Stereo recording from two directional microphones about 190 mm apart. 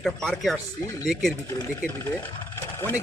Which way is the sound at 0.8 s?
20° left (ahead or behind).